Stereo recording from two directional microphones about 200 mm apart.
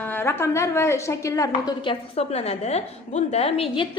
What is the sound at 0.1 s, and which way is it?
A woman's voice, 10° left (ahead or behind).